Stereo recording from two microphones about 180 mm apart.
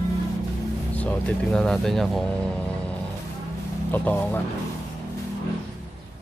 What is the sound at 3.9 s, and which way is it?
Speech, 10° left (ahead or behind).